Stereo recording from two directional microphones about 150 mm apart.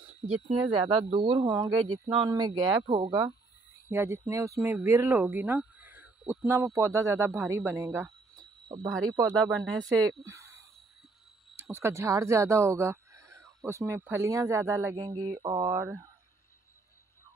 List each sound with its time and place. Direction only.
0.5 s speech: 30° right (ahead or behind)
8.8 s speech: 5° left (ahead or behind)
9.8 s speech: 25° right (ahead or behind)
11.7 s speech: 20° right (ahead or behind)
15.0 s speech: 35° right (ahead or behind)
15.7 s speech: 20° right (ahead or behind)